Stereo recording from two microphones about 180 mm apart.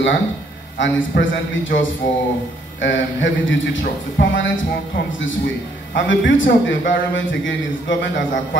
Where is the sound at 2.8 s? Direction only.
90° left.